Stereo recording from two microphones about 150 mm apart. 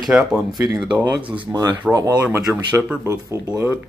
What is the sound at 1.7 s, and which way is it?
Speech, 15° right (ahead or behind).